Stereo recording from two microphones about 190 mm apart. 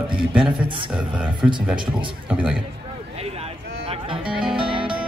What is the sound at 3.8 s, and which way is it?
Music, 30° right (ahead or behind).